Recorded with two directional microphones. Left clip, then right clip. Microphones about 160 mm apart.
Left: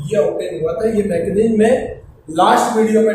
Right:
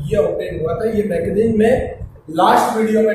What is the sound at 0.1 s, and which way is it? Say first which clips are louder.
A man's voice: left 1 dB; centre (ahead or behind).